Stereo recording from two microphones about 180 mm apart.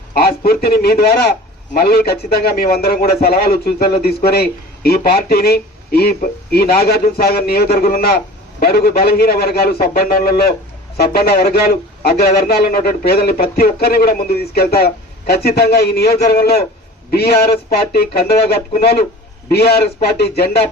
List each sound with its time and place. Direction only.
0.1 s a sound: 55° left (ahead or behind)
0.6 s a man's voice: 60° left (ahead or behind)
20.1 s a man's voice: 60° left (ahead or behind)